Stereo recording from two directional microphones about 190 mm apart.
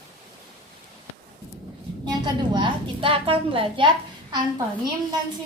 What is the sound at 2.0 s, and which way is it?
A woman's voice, 20° right (ahead or behind).